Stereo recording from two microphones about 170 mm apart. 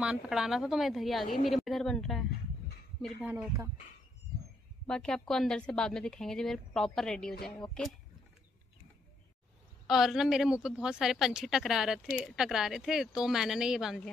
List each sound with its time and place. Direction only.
0.0 s speech: 5° right (ahead or behind)
3.3 s speech: 20° right (ahead or behind)
4.8 s speech: 5° left (ahead or behind)
9.8 s speech: centre (ahead or behind)